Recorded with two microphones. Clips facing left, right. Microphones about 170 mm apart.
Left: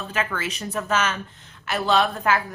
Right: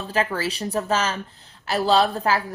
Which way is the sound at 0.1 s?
35° right (ahead or behind).